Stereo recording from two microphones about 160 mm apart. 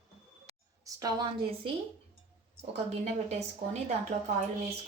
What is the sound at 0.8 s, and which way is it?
Speech, 20° right (ahead or behind).